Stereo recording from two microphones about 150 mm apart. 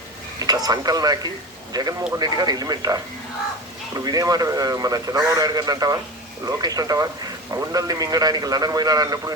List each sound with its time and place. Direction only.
0.3 s a man's voice: 25° right (ahead or behind)